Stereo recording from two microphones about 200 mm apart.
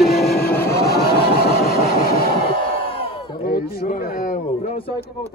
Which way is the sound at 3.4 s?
45° left (ahead or behind).